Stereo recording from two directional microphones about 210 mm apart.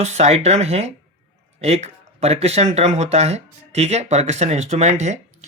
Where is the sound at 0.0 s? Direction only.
30° right (ahead or behind).